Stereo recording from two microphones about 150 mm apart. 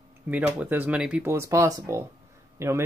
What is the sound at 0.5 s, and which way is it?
A man's voice, 10° right (ahead or behind).